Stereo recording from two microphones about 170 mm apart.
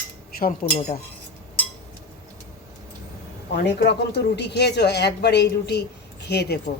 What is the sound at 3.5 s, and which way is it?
Speech, 80° left.